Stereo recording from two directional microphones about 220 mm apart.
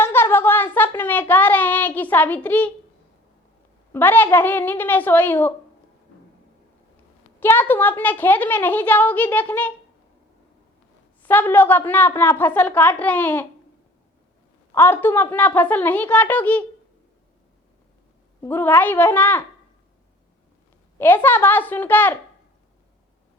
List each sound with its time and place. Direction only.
0.0 s child singing: 10° left (ahead or behind)
3.9 s a woman's voice: 10° left (ahead or behind)
7.3 s a woman's voice: 10° left (ahead or behind)
11.2 s a woman's voice: 10° left (ahead or behind)
14.7 s a woman's voice: 10° left (ahead or behind)
18.4 s a woman's voice: 10° left (ahead or behind)
21.0 s a woman's voice: 10° left (ahead or behind)